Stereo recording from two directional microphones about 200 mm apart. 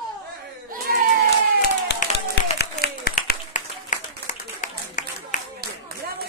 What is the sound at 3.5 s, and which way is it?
Clapping, 40° left (ahead or behind).